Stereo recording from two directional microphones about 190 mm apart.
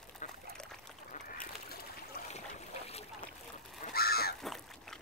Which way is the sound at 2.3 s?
35° left (ahead or behind).